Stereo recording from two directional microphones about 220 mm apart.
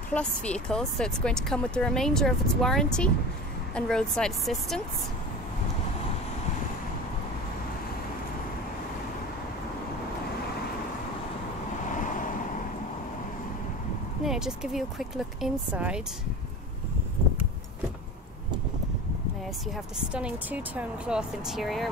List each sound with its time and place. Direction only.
0.1 s speech: 5° left (ahead or behind)
11.9 s waves: 35° left (ahead or behind)
14.2 s speech: centre (ahead or behind)
19.7 s speech: 5° right (ahead or behind)